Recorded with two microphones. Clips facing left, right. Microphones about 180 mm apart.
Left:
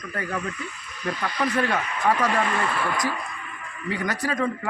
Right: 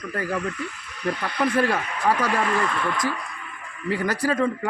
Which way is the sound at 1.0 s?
60° right (ahead or behind).